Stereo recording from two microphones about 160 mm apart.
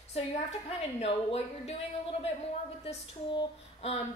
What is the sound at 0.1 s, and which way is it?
Speech, 40° left (ahead or behind).